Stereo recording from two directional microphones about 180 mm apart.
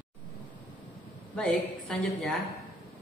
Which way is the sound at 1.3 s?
5° left (ahead or behind).